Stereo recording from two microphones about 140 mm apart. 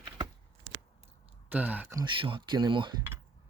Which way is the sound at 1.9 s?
35° right (ahead or behind).